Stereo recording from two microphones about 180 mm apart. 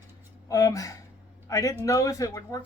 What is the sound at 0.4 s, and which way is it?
A man's voice, 20° left (ahead or behind).